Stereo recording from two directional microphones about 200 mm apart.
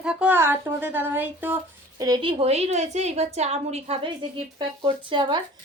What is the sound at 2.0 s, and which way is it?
A woman's voice, 20° right (ahead or behind).